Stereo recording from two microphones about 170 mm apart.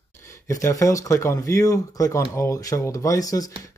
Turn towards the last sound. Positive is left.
turn(degrees=20)  # may be behind; listen again after turning